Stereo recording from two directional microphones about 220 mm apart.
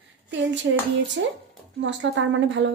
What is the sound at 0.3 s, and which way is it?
A woman's voice, 55° right (ahead or behind).